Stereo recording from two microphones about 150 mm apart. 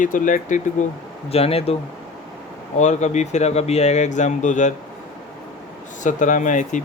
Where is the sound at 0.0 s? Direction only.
60° left (ahead or behind).